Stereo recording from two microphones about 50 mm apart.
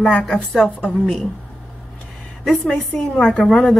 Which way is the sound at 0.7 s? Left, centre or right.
Left.